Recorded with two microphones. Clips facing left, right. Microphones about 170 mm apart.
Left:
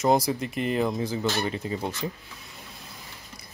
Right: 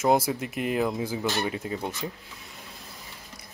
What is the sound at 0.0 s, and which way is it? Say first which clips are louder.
Speech: even; 5° right (ahead or behind).